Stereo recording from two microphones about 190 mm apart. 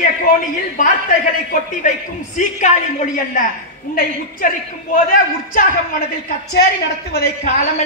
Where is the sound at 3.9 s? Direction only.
50° left (ahead or behind).